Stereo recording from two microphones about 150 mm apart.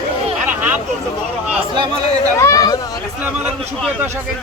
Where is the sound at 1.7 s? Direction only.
30° right (ahead or behind).